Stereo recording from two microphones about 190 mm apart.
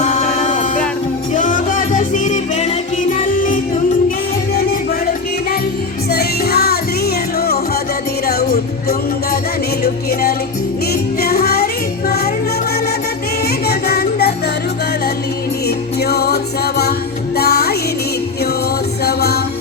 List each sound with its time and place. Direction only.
0.0 s music: 35° left (ahead or behind)
6.1 s music: 55° left (ahead or behind)
9.8 s music: 55° left (ahead or behind)
13.7 s music: 55° left (ahead or behind)
15.6 s music: 60° left (ahead or behind)
19.0 s music: 60° left (ahead or behind)